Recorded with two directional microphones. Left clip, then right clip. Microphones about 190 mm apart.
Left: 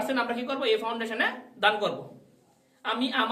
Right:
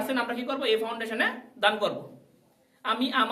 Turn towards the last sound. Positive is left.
turn(degrees=-15)  # may be behind; listen again after turning